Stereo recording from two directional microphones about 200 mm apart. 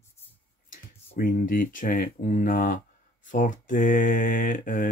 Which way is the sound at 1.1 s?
45° left (ahead or behind).